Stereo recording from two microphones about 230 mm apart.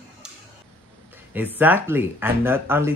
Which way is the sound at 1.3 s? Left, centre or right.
Centre.